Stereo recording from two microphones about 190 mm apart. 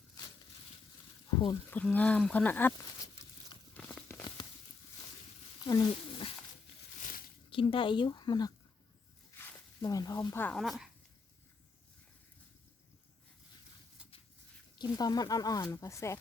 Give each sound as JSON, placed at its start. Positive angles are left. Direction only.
{"t": 1.7, "sound": "speech", "side_deg": 10}
{"t": 3.8, "sound": "tearing", "side_deg": 5}
{"t": 5.6, "sound": "roaring cats", "side_deg": 20}
{"t": 7.0, "sound": "a sound", "side_deg": 50}
{"t": 7.5, "sound": "speech", "side_deg": 25}
{"t": 14.8, "sound": "speech", "side_deg": 20}